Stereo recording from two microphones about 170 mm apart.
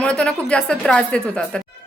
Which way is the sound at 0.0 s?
5° left (ahead or behind).